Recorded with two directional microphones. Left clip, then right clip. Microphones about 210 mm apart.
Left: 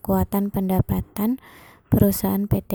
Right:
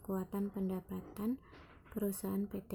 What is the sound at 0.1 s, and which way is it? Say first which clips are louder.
Speech: left 17 dB; 45° left (ahead or behind).